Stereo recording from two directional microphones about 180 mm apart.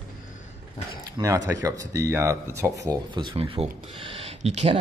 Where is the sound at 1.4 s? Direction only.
20° right (ahead or behind).